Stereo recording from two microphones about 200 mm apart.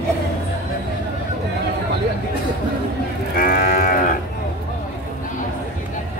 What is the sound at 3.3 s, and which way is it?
Moo, 45° left (ahead or behind).